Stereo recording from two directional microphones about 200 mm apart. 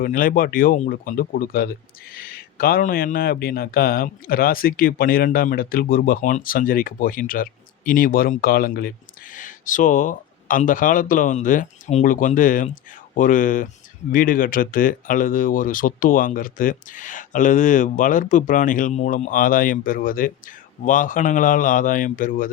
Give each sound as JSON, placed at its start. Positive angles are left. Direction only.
{"t": 0.0, "sound": "speech", "side_deg": 45}